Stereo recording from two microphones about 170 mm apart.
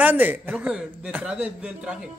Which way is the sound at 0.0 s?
10° right (ahead or behind).